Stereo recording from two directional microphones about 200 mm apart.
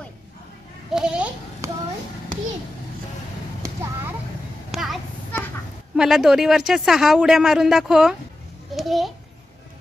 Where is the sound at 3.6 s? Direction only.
15° right (ahead or behind).